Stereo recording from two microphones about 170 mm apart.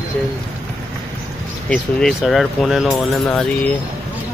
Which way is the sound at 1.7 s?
Centre (ahead or behind).